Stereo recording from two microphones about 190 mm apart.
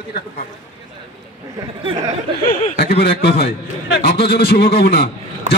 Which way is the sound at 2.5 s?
50° left (ahead or behind).